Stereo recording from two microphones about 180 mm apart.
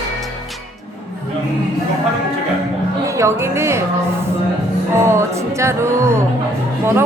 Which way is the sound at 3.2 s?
15° right (ahead or behind).